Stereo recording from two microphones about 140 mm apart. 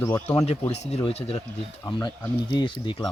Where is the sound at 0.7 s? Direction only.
50° left (ahead or behind).